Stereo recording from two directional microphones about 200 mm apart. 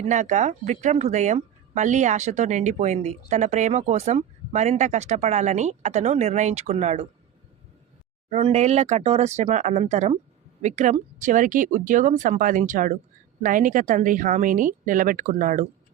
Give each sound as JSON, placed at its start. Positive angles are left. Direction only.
{"t": 0.0, "sound": "speech", "side_deg": -35}
{"t": 8.3, "sound": "speech", "side_deg": -30}